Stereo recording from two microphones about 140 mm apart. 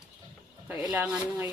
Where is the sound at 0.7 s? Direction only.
10° right (ahead or behind).